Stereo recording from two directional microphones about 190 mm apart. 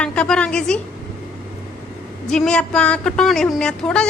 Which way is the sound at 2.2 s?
5° left (ahead or behind).